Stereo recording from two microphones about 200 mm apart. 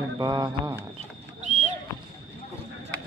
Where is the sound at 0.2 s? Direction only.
20° right (ahead or behind).